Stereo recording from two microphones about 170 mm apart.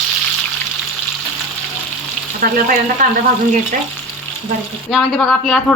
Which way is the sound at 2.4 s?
55° right (ahead or behind).